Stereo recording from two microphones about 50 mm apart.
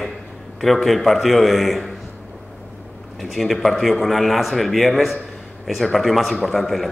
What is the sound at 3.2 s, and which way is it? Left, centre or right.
A man's voice, centre.